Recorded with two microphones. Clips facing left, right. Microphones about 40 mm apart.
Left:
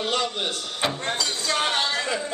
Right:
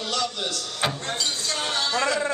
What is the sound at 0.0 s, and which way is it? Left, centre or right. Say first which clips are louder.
A man's voice: left 2 dB; left.